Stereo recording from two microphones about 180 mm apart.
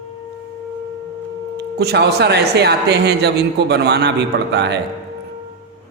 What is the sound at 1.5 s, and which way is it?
Speech, 65° right (ahead or behind).